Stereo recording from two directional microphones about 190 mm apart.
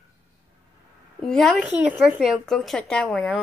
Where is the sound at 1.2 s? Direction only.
Centre (ahead or behind).